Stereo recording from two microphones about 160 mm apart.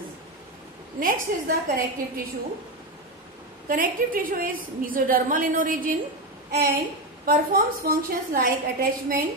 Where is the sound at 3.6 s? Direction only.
60° right (ahead or behind).